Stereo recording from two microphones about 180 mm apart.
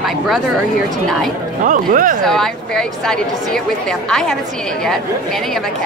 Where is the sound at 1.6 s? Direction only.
50° right (ahead or behind).